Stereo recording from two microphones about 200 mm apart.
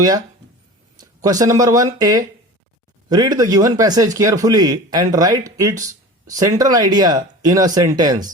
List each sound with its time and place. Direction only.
0.9 s a man's voice: 20° right (ahead or behind)